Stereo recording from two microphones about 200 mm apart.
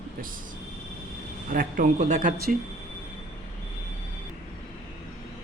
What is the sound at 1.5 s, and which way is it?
Speech, 40° right (ahead or behind).